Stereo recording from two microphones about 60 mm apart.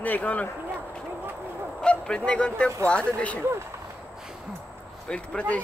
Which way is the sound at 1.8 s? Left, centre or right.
Centre.